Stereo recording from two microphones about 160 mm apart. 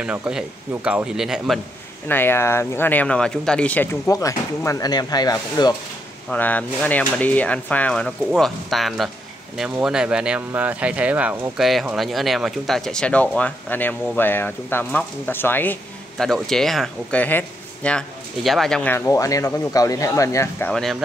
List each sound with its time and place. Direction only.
0.0 s speech: 5° right (ahead or behind)
2.0 s speech: 15° left (ahead or behind)
6.3 s speech: 10° left (ahead or behind)
18.9 s speech: 20° left (ahead or behind)
20.7 s speech: centre (ahead or behind)